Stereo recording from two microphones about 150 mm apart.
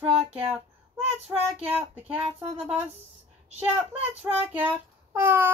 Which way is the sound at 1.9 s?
10° right (ahead or behind).